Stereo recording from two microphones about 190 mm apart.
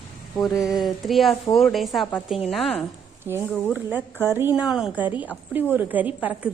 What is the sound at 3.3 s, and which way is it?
Speech, 10° left (ahead or behind).